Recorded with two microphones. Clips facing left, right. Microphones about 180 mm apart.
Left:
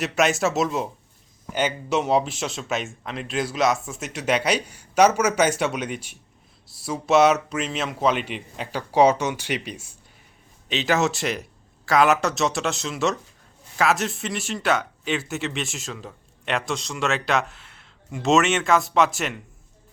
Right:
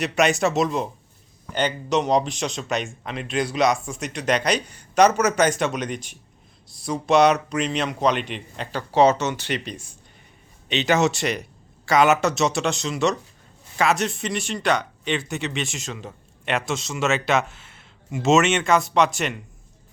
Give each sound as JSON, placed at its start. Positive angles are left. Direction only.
{"t": 0.0, "sound": "speech", "side_deg": 0}